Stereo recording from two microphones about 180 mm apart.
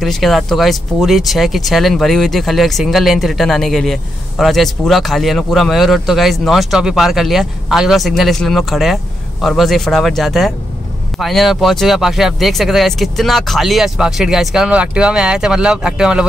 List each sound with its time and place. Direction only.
0.0 s speech: centre (ahead or behind)